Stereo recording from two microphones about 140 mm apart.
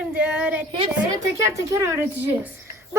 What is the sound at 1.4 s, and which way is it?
Speech, 20° right (ahead or behind).